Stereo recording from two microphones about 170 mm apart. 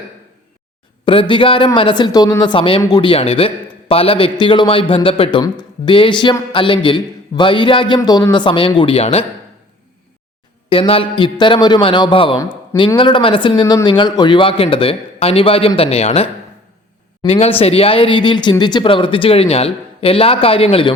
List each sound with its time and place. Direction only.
1.0 s a man's voice: 30° left (ahead or behind)
10.7 s speech: 30° left (ahead or behind)